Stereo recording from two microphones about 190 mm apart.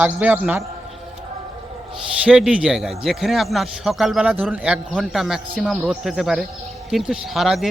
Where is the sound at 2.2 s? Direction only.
5° right (ahead or behind).